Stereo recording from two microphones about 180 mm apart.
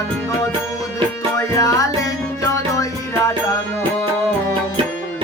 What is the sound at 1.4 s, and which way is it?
Music, 20° left (ahead or behind).